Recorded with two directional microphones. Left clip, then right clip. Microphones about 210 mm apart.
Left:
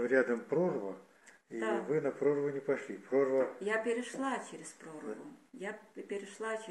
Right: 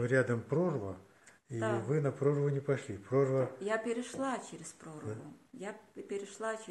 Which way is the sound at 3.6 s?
30° right (ahead or behind).